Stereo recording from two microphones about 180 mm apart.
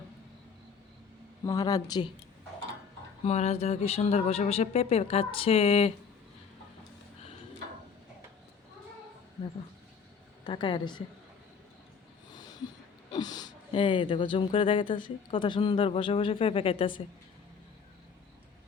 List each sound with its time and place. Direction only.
1.5 s speech: 20° left (ahead or behind)
3.2 s speech: 35° left (ahead or behind)
10.4 s speech: 25° left (ahead or behind)
13.1 s speech: 25° left (ahead or behind)